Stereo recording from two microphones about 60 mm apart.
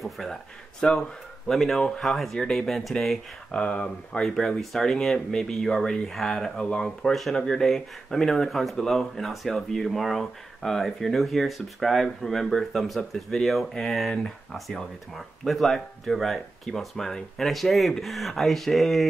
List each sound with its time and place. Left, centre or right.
0.0 s a sound: centre
0.7 s speech: centre
1.5 s speech: centre
3.5 s speech: centre
4.2 s speech: centre
7.1 s speech: centre